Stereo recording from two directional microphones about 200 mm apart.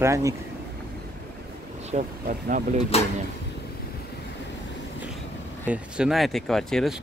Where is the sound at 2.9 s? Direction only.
30° left (ahead or behind).